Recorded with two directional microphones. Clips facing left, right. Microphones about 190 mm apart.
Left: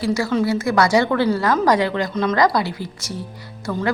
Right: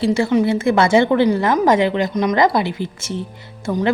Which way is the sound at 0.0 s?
30° right (ahead or behind).